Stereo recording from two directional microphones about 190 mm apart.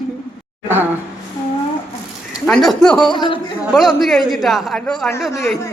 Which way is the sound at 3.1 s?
25° left (ahead or behind).